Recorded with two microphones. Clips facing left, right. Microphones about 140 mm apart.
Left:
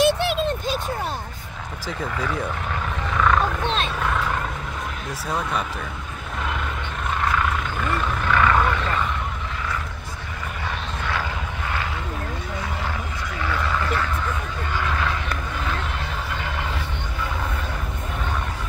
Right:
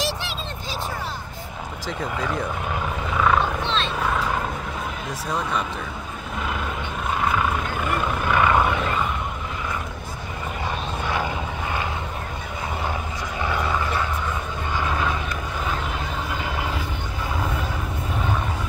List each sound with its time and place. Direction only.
0.0 s a sound: 55° left (ahead or behind)
2.1 s speech: 10° right (ahead or behind)
3.1 s helicopter: 5° right (ahead or behind)
3.6 s wild animals: 50° left (ahead or behind)
7.2 s vehicle: 10° right (ahead or behind)
13.4 s vehicle: 20° right (ahead or behind)